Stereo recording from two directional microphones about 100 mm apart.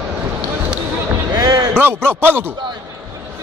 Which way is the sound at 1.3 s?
40° right (ahead or behind).